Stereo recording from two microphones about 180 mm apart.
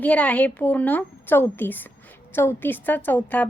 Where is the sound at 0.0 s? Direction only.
10° left (ahead or behind).